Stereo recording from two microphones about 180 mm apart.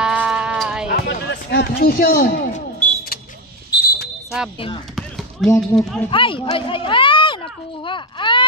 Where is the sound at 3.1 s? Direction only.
60° left (ahead or behind).